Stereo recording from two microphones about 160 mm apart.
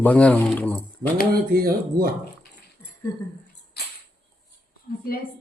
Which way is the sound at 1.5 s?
70° right (ahead or behind).